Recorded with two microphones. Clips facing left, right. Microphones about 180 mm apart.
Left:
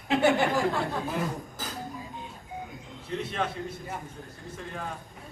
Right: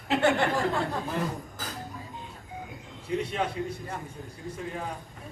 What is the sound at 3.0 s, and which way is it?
Speech, 10° right (ahead or behind).